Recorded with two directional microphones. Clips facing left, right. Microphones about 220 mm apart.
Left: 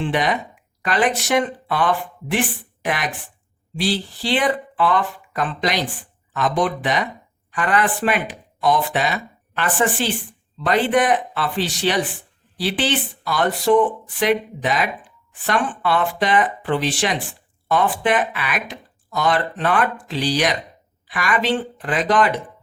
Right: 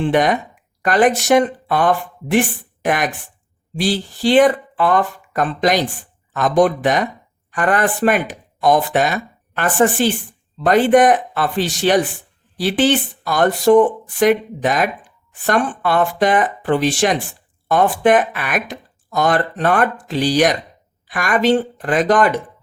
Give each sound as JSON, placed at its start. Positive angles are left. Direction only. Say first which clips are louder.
{"t": 0.0, "sound": "speech", "louder": "right 5 dB", "side_deg": -45}